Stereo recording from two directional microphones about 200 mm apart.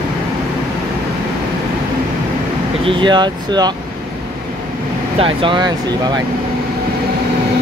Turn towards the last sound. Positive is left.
turn(degrees=-25)  # may be behind; listen again after turning